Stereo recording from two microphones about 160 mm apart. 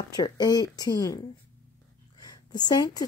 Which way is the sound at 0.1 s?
25° left (ahead or behind).